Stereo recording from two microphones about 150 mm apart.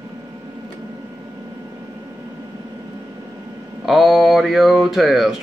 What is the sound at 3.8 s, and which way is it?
Speech, centre (ahead or behind).